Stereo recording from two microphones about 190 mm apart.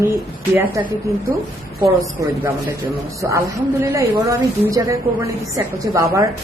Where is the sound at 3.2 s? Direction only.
15° right (ahead or behind).